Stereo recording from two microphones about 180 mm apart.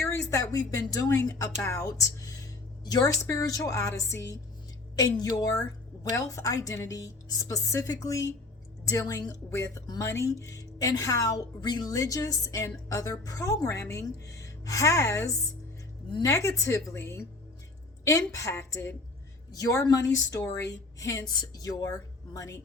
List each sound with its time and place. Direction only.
0.0 s a woman's voice: 15° left (ahead or behind)
18.3 s a woman's voice: 15° left (ahead or behind)